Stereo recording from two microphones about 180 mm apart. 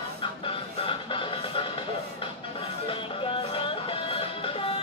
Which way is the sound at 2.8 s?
30° left (ahead or behind).